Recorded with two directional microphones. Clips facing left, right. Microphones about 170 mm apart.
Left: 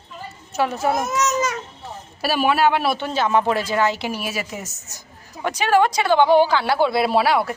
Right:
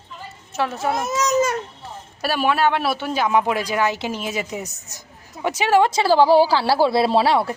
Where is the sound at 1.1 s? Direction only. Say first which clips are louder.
Even; 30° right (ahead or behind).